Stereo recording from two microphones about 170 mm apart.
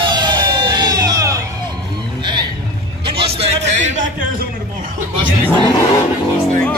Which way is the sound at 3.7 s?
45° right (ahead or behind).